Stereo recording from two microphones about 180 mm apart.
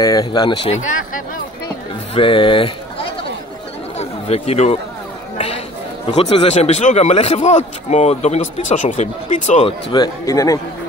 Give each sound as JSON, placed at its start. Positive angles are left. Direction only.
{"t": 0.0, "sound": "speech", "side_deg": 20}
{"t": 2.1, "sound": "speech", "side_deg": 30}
{"t": 4.0, "sound": "chatter", "side_deg": 35}
{"t": 6.1, "sound": "a man's voice", "side_deg": 35}
{"t": 9.9, "sound": "speech", "side_deg": 20}